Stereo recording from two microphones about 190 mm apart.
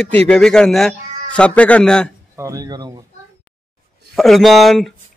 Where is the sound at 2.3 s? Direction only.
15° right (ahead or behind).